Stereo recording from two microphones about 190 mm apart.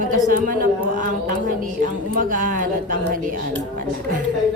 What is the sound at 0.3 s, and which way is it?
A woman's voice, 45° right (ahead or behind).